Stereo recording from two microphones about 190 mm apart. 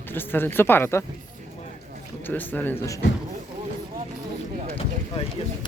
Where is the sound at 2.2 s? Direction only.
10° left (ahead or behind).